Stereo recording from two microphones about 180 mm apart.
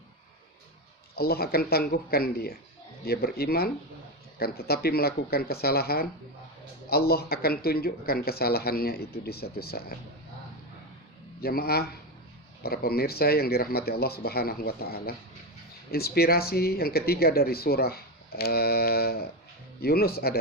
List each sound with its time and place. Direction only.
1.1 s speech: 60° left (ahead or behind)
11.3 s speech: 60° left (ahead or behind)